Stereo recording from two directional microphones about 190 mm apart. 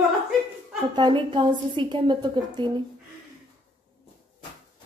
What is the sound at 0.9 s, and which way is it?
A woman's voice, 25° right (ahead or behind).